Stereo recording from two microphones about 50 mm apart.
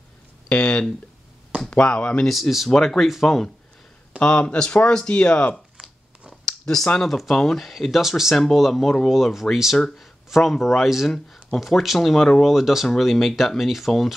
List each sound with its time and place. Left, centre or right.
0.5 s speech: centre
2.2 s speech: centre
4.2 s speech: left
5.8 s a sound: centre
6.4 s speech: centre
12.5 s speech: centre